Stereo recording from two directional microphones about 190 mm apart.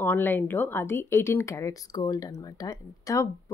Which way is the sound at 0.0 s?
10° left (ahead or behind).